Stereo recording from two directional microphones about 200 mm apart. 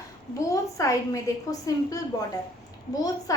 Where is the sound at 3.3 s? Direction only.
15° left (ahead or behind).